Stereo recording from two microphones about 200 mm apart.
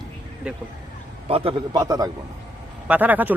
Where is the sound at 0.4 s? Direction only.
5° right (ahead or behind).